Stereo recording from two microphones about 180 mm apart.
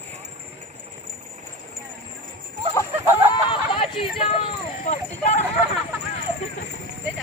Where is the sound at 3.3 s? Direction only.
30° left (ahead or behind).